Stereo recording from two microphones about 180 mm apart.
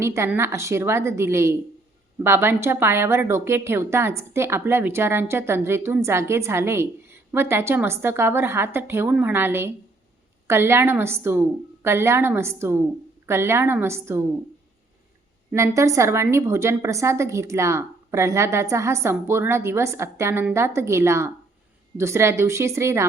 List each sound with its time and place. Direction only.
0.0 s a woman's voice: 15° right (ahead or behind)
15.5 s a woman's voice: 15° right (ahead or behind)